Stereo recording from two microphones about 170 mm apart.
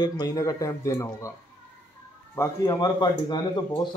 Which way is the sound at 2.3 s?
20° left (ahead or behind).